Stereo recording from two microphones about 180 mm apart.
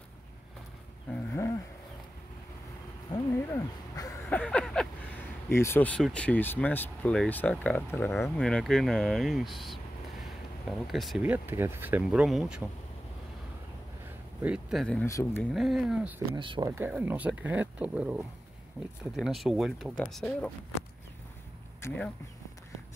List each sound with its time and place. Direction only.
1.1 s a sound: 15° left (ahead or behind)
3.1 s a sound: 20° left (ahead or behind)
4.3 s a sound: 5° left (ahead or behind)
5.5 s speech: 15° left (ahead or behind)
10.9 s speech: centre (ahead or behind)
14.4 s speech: 5° right (ahead or behind)
15.0 s speech: 15° left (ahead or behind)
15.5 s speech: centre (ahead or behind)
16.3 s speech: 25° right (ahead or behind)
16.7 s speech: 10° right (ahead or behind); by 20.5 s 5° left (ahead or behind)
21.8 s speech: 5° left (ahead or behind)